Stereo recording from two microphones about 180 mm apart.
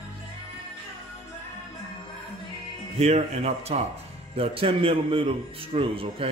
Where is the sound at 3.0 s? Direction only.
35° right (ahead or behind).